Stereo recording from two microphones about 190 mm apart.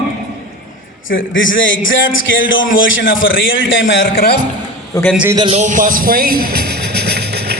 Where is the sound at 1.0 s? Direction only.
90° left.